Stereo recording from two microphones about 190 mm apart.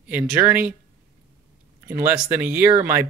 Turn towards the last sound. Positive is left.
turn(degrees=-10)  # may be behind; listen again after turning